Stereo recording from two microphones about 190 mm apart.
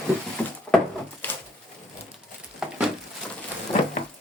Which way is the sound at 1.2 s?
10° left (ahead or behind).